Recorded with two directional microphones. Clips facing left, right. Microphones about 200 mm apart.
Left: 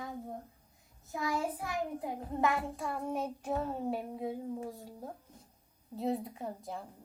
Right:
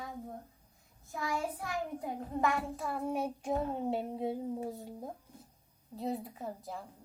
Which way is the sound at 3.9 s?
25° right (ahead or behind).